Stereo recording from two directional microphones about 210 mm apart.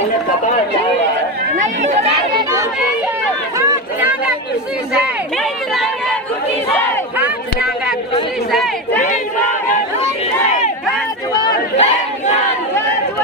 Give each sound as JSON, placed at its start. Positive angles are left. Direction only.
{"t": 3.5, "sound": "run", "side_deg": -10}
{"t": 8.5, "sound": "chatter", "side_deg": 0}
{"t": 11.7, "sound": "crowd", "side_deg": 30}